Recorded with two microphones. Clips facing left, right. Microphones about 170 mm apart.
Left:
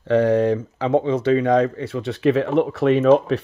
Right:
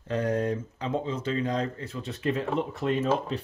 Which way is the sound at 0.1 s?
80° left.